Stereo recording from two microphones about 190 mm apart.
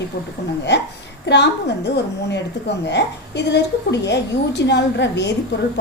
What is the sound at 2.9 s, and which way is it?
A woman's voice, 65° left (ahead or behind).